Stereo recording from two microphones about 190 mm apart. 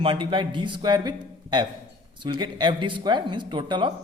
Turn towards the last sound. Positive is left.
turn(degrees=-25)  # may be behind; listen again after turning